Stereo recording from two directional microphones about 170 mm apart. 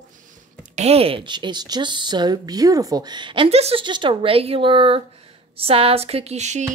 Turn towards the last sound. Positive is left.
turn(degrees=-40)  # may be behind; listen again after turning